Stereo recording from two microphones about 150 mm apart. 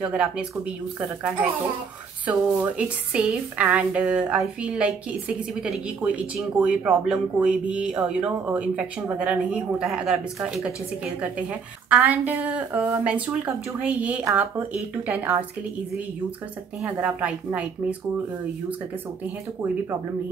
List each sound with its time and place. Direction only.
0.0 s speech: 5° right (ahead or behind)
2.2 s speech: 10° right (ahead or behind)
11.9 s speech: 10° right (ahead or behind)
16.8 s speech: 10° right (ahead or behind)